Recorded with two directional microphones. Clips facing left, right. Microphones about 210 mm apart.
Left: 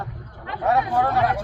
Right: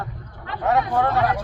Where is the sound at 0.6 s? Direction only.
15° left (ahead or behind).